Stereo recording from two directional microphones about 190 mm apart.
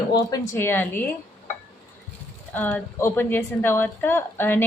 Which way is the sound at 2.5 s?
10° left (ahead or behind).